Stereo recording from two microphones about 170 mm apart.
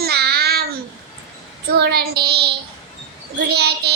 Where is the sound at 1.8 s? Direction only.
70° right (ahead or behind).